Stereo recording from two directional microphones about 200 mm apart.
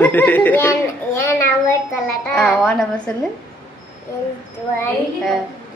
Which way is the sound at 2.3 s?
Centre (ahead or behind).